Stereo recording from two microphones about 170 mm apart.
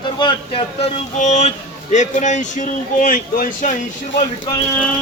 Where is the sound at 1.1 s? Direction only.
45° left (ahead or behind).